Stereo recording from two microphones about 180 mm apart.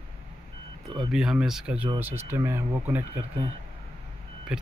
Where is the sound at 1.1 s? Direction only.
5° right (ahead or behind).